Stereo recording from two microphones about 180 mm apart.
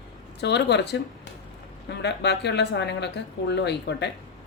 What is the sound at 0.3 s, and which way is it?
Speech, 70° left (ahead or behind).